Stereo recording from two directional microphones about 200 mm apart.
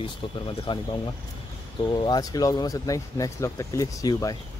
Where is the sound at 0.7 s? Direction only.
25° left (ahead or behind).